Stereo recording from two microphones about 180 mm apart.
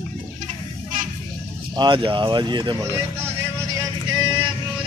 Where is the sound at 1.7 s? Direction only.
25° right (ahead or behind).